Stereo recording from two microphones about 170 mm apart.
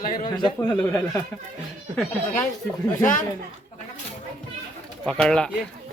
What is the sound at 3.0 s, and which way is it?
Speech, 50° left (ahead or behind).